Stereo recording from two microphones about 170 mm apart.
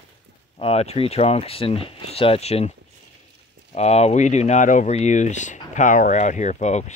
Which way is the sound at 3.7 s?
40° left (ahead or behind).